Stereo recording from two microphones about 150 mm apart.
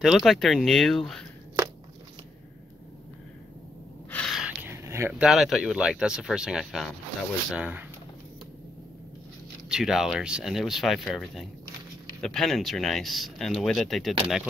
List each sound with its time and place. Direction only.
0.0 s speech: centre (ahead or behind)
4.1 s gasp: 5° left (ahead or behind)
4.6 s a sound: 20° right (ahead or behind)
5.2 s speech: centre (ahead or behind)
9.7 s speech: 5° right (ahead or behind)